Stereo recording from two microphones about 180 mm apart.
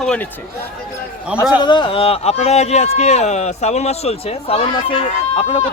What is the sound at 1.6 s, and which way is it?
A man's voice, 25° left (ahead or behind).